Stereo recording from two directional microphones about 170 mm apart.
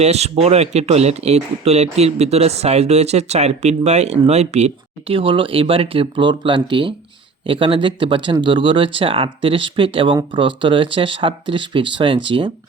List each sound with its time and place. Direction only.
0.0 s speech: 40° right (ahead or behind)